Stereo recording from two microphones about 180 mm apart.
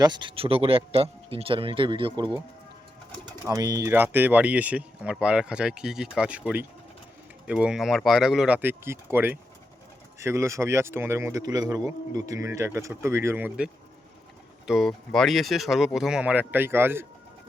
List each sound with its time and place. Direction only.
0.0 s speech: 25° right (ahead or behind)
3.4 s speech: 20° right (ahead or behind)
14.7 s speech: centre (ahead or behind)